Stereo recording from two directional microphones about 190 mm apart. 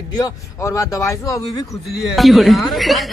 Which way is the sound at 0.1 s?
15° left (ahead or behind).